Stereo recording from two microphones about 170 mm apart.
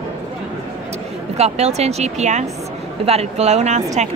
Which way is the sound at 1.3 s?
40° right (ahead or behind).